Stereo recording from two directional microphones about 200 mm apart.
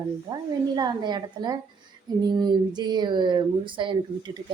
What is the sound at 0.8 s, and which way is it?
Speech, 20° right (ahead or behind).